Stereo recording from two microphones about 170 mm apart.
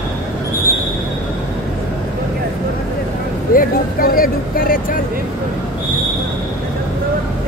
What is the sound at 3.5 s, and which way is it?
Speech, 55° left (ahead or behind).